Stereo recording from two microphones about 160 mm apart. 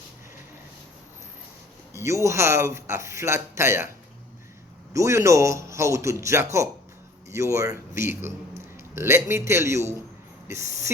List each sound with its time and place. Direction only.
1.9 s speech: 20° right (ahead or behind)
4.9 s speech: 20° right (ahead or behind)